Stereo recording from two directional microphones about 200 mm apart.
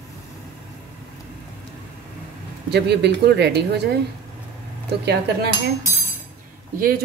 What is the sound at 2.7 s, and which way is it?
Speech, 55° right (ahead or behind).